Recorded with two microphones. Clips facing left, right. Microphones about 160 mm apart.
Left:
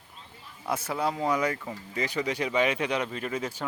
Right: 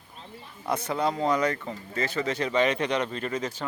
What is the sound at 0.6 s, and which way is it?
Speech, 5° left (ahead or behind).